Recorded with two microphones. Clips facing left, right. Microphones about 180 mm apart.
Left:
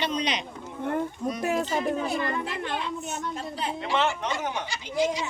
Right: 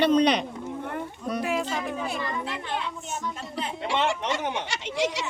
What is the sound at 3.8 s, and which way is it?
Speech, 85° right.